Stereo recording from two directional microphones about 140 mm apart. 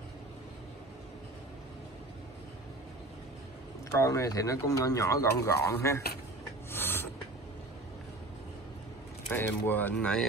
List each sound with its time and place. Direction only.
3.9 s speech: 25° left (ahead or behind)
6.7 s a sound: 15° left (ahead or behind)
9.3 s speech: 15° left (ahead or behind)